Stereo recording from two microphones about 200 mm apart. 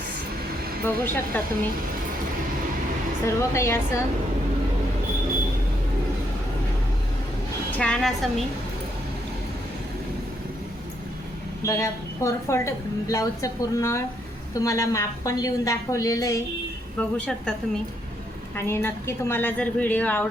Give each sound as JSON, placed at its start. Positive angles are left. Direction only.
{"t": 0.9, "sound": "a woman's voice", "side_deg": 10}
{"t": 3.2, "sound": "a woman's voice", "side_deg": 15}
{"t": 7.8, "sound": "a woman's voice", "side_deg": 5}
{"t": 11.6, "sound": "a woman's voice", "side_deg": 15}
{"t": 17.0, "sound": "a woman's voice", "side_deg": 5}
{"t": 18.5, "sound": "a woman's voice", "side_deg": 10}